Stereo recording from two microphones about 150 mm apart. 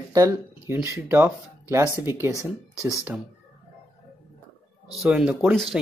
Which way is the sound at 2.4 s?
20° left (ahead or behind).